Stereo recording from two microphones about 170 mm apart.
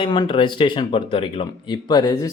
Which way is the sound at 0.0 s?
25° left (ahead or behind).